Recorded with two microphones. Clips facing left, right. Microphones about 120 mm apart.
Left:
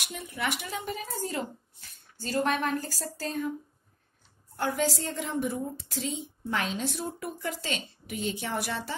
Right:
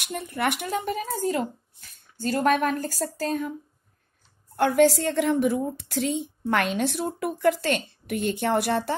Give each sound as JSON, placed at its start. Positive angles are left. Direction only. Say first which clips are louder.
{"t": 0.0, "sound": "a woman's voice", "louder": "right 6 dB", "side_deg": -55}
{"t": 4.6, "sound": "a woman's voice", "louder": "right 10 dB", "side_deg": -65}